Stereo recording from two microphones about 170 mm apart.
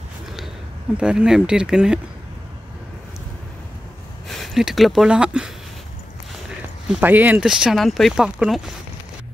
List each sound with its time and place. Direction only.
0.9 s speech: 5° right (ahead or behind)
4.3 s speech: centre (ahead or behind)
6.9 s speech: 10° right (ahead or behind)